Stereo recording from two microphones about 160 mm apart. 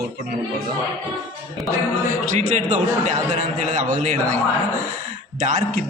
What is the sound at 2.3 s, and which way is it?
A man's voice, 50° right (ahead or behind).